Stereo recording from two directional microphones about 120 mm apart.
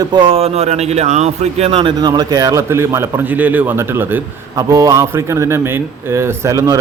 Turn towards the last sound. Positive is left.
turn(degrees=-30)  # may be behind; listen again after turning